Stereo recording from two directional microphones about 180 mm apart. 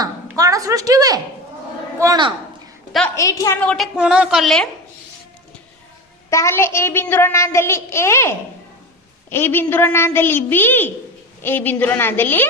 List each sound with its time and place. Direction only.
0.0 s a woman's voice: 20° right (ahead or behind)
3.2 s a woman's voice: 20° left (ahead or behind)
3.6 s a child's voice: 5° left (ahead or behind)
3.9 s speech: 5° right (ahead or behind)
6.3 s a child's voice: 15° left (ahead or behind)